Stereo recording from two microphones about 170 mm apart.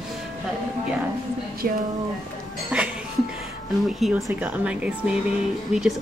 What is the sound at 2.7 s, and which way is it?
Speech, 5° right (ahead or behind).